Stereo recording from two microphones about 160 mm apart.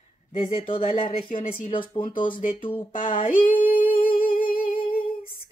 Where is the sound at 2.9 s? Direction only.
55° left (ahead or behind).